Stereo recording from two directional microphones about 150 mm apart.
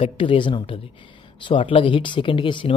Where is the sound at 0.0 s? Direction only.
35° left (ahead or behind).